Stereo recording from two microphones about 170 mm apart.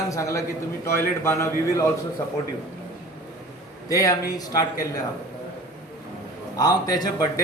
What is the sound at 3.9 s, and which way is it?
A man's voice, 20° left (ahead or behind).